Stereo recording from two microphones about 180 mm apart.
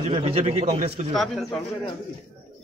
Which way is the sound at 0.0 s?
35° right (ahead or behind).